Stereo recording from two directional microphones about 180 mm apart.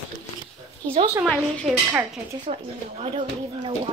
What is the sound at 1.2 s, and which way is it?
Speech, 5° left (ahead or behind).